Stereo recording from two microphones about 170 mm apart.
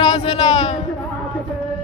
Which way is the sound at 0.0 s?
25° left (ahead or behind).